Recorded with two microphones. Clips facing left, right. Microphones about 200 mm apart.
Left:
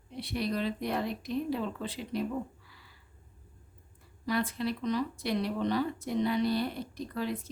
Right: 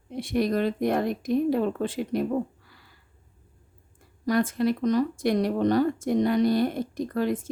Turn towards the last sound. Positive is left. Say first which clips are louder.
# right 8 dB
turn(degrees=-50)  # may be behind; listen again after turning